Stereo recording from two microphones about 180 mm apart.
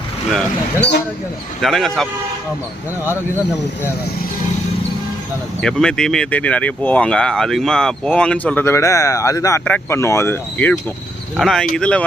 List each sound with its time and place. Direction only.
0.8 s speech: 70° left (ahead or behind)
1.6 s speech: centre (ahead or behind)
5.6 s speech: 5° left (ahead or behind)